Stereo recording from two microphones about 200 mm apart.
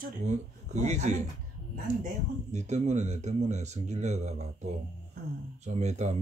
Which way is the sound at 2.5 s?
35° right (ahead or behind).